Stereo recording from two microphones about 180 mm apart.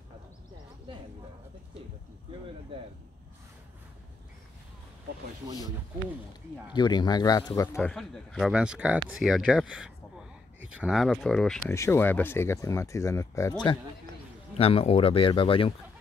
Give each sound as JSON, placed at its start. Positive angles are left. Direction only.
{"t": 6.7, "sound": "speech", "side_deg": 25}
{"t": 11.7, "sound": "speech", "side_deg": 15}
{"t": 14.6, "sound": "speech", "side_deg": 30}